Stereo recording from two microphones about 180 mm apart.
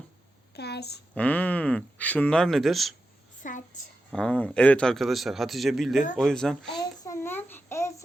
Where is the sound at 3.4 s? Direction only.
45° left (ahead or behind).